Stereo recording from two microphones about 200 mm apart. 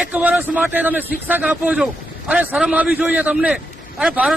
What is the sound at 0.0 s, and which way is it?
A man's voice, 5° right (ahead or behind).